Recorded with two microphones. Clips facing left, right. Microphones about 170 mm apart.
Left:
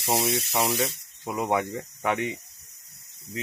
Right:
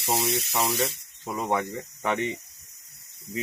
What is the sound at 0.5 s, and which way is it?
Speech, 15° left (ahead or behind).